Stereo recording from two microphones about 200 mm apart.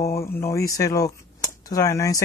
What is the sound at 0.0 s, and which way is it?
Speech, 15° left (ahead or behind).